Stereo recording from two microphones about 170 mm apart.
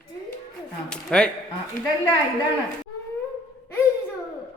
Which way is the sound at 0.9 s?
5° left (ahead or behind).